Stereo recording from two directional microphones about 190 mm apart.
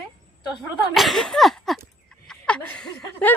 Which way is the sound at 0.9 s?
Centre (ahead or behind).